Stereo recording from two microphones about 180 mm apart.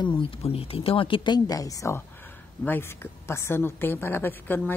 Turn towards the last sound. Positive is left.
turn(degrees=10)  # may be behind; listen again after turning